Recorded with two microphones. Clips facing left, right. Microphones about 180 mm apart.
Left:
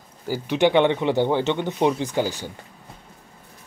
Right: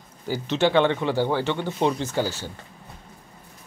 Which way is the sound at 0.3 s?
15° left (ahead or behind).